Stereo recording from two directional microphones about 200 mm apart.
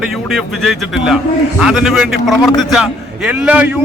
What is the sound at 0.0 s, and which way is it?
A man's voice, centre (ahead or behind).